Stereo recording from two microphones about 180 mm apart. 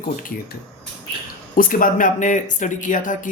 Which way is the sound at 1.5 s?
50° left (ahead or behind).